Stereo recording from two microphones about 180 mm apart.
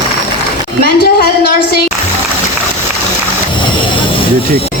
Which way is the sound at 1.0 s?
60° left (ahead or behind).